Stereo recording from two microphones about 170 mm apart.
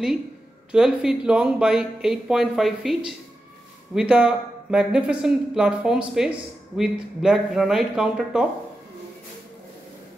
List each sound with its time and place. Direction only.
0.7 s speech: 5° right (ahead or behind)